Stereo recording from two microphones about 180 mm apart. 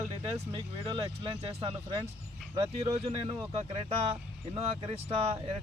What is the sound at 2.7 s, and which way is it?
Speech, 35° right (ahead or behind).